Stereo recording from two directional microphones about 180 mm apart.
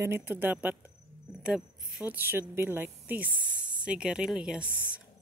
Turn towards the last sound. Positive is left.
turn(degrees=10)  # may be behind; listen again after turning